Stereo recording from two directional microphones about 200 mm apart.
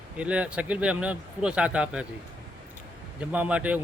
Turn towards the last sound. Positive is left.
turn(degrees=-5)  # may be behind; listen again after turning